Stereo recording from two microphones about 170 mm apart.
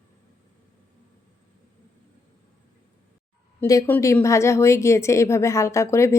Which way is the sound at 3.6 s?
20° left (ahead or behind).